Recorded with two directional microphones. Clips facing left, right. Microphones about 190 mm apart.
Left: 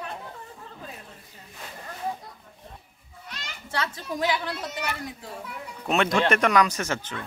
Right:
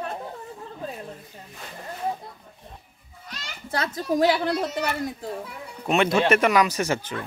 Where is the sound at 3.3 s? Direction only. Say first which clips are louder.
Right 4 dB; 40° right (ahead or behind).